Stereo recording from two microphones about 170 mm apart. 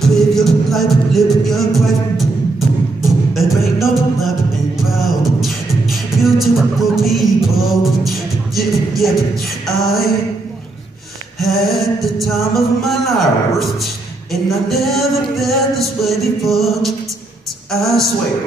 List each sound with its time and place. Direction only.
0.0 s music: centre (ahead or behind)
3.1 s beatboxing: centre (ahead or behind)
9.7 s a sound: centre (ahead or behind)
11.3 s music: centre (ahead or behind)